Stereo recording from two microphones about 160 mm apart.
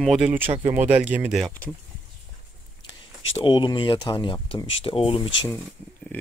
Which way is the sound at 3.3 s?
30° left (ahead or behind).